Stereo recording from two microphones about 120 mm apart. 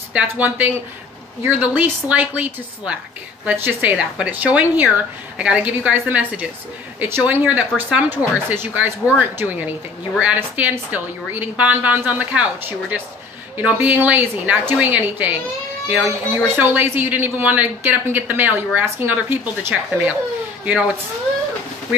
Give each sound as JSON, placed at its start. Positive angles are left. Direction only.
{"t": 0.1, "sound": "speech", "side_deg": -15}